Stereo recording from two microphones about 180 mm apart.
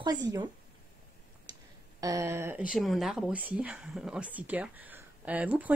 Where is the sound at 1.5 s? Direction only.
20° right (ahead or behind).